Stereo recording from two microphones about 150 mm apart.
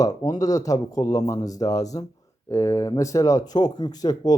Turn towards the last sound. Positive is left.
turn(degrees=25)  # may be behind; listen again after turning